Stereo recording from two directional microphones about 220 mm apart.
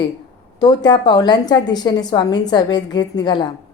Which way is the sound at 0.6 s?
20° left (ahead or behind).